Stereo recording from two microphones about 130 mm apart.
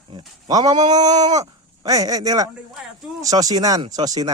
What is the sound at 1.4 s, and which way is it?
Speech, 25° right (ahead or behind).